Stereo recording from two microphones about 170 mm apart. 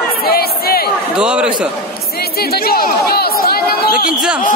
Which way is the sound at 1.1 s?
5° right (ahead or behind).